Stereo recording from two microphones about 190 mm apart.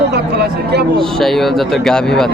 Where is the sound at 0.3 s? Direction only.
60° right (ahead or behind).